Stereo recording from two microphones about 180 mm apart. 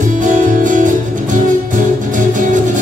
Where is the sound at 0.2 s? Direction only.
45° right (ahead or behind).